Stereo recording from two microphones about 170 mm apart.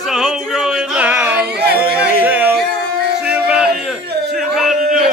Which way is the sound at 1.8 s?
10° right (ahead or behind).